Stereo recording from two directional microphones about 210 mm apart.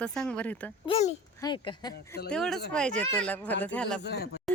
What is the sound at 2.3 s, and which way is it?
Speech, 5° left (ahead or behind).